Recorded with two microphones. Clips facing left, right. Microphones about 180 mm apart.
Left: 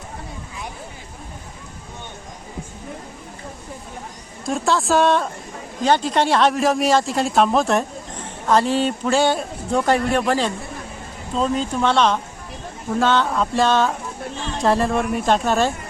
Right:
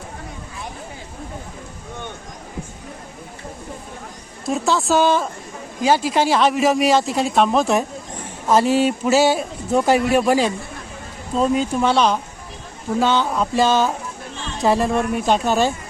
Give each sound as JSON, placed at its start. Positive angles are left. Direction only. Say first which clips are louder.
{"t": 4.4, "sound": "a man's voice", "louder": "right 1 dB", "side_deg": 0}